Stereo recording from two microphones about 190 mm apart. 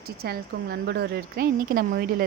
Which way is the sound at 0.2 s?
55° right (ahead or behind).